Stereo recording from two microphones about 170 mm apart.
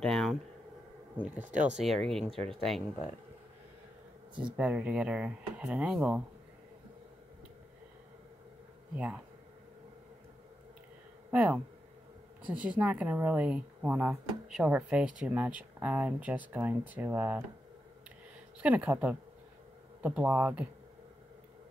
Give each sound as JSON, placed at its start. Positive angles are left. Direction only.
{"t": 0.0, "sound": "a sound", "side_deg": 0}
{"t": 1.1, "sound": "speech", "side_deg": -10}
{"t": 1.5, "sound": "speech", "side_deg": -50}
{"t": 2.0, "sound": "speech", "side_deg": 0}
{"t": 4.5, "sound": "speech", "side_deg": -10}
{"t": 8.9, "sound": "speech", "side_deg": -5}
{"t": 11.2, "sound": "speech", "side_deg": -10}
{"t": 18.6, "sound": "speech", "side_deg": -10}